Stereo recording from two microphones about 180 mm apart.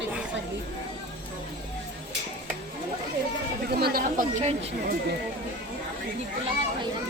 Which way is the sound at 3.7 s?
60° right (ahead or behind).